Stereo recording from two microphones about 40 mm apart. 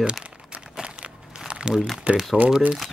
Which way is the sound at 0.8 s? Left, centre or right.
Right.